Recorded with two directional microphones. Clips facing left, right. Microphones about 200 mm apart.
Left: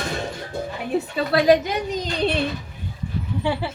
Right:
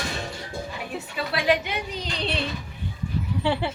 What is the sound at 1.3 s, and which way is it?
A woman's voice, 40° left (ahead or behind).